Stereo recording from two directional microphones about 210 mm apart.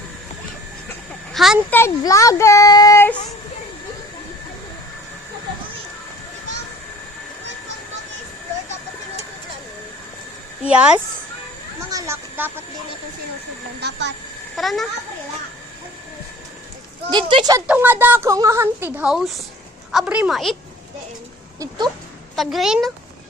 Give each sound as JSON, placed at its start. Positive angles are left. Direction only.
{"t": 1.3, "sound": "speech", "side_deg": 0}
{"t": 1.8, "sound": "a child's voice", "side_deg": 15}
{"t": 10.7, "sound": "a woman's voice", "side_deg": -5}
{"t": 11.9, "sound": "a sound", "side_deg": -15}
{"t": 13.7, "sound": "speech", "side_deg": -55}
{"t": 14.5, "sound": "a woman's voice", "side_deg": 0}
{"t": 17.1, "sound": "speech", "side_deg": -20}
{"t": 17.7, "sound": "a woman's voice", "side_deg": -10}
{"t": 22.4, "sound": "a woman's voice", "side_deg": 0}